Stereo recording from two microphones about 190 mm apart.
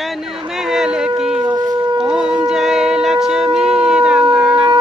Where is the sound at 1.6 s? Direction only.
20° right (ahead or behind).